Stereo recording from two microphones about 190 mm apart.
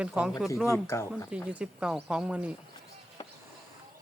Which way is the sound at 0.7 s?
15° left (ahead or behind).